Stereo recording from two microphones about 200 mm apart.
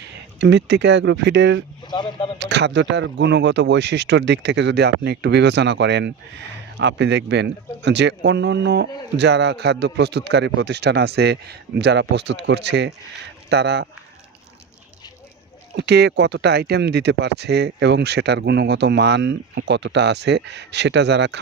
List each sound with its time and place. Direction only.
0.0 s speech: 60° right (ahead or behind)
1.9 s speech: 25° left (ahead or behind)
2.4 s speech: 60° right (ahead or behind)
15.7 s speech: 60° right (ahead or behind)